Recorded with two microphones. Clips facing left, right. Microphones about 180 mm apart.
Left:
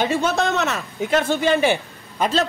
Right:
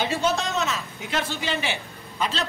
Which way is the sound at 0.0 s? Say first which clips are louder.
Left 4 dB; 60° left (ahead or behind).